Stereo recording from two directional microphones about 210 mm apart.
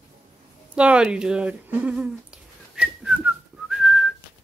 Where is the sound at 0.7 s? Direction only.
5° right (ahead or behind).